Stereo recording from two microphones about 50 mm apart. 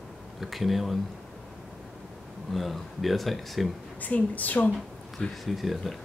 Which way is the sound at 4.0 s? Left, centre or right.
Left.